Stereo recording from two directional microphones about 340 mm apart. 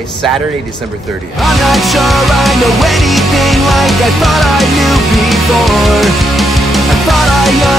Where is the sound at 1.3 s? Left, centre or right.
Centre.